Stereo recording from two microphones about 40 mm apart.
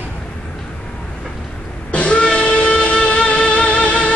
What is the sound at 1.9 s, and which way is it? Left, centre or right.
Music, left.